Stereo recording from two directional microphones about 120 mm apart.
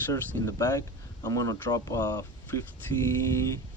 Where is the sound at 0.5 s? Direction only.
30° left (ahead or behind).